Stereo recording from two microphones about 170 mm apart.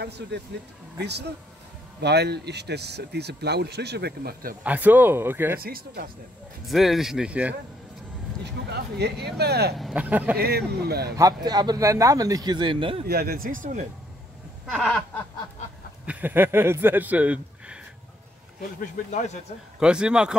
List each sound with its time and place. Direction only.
0.9 s speech: 80° right; by 4.6 s 60° right (ahead or behind)
4.6 s speech: 10° right (ahead or behind)
5.6 s speech: 60° right (ahead or behind)
6.6 s speech: centre (ahead or behind)
8.6 s speech: 75° right (ahead or behind)
9.8 s speech: 5° right (ahead or behind)
10.3 s speech: 65° right (ahead or behind)
11.1 s a man's voice: 20° right (ahead or behind)
13.0 s speech: 65° right (ahead or behind)
14.7 s speech: centre (ahead or behind)
16.1 s a man's voice: 10° right (ahead or behind)
19.8 s speech: 5° right (ahead or behind)